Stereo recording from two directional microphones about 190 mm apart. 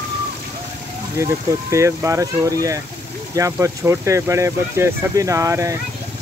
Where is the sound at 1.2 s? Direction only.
15° right (ahead or behind).